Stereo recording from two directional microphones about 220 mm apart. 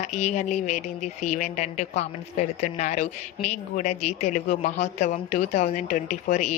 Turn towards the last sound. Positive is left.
turn(degrees=35)  # may be behind; listen again after turning